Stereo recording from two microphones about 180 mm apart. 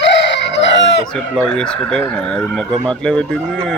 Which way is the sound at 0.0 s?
75° left (ahead or behind).